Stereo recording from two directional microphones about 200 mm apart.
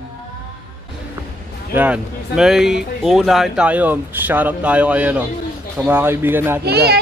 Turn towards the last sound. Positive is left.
turn(degrees=-55)  # may be behind; listen again after turning